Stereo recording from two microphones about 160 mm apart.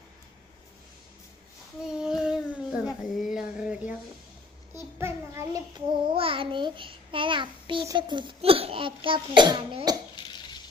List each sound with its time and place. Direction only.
1.8 s child singing: 5° right (ahead or behind)
4.9 s child singing: 15° right (ahead or behind)
7.9 s a child's voice: 30° right (ahead or behind)
10.2 s a sound: 30° left (ahead or behind)